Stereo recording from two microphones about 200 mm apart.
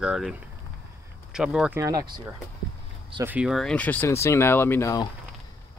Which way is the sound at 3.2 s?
10° right (ahead or behind).